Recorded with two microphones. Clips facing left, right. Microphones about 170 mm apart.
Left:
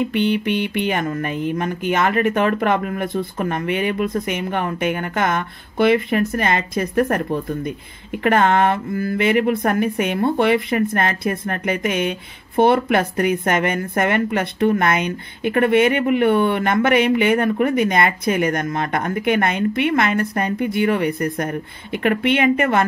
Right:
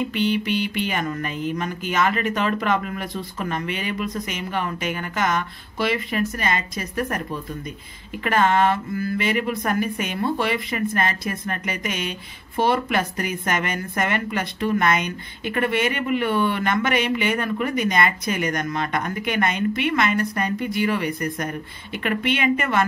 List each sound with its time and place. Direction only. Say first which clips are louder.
0.1 s speech: left 3 dB; 55° left (ahead or behind)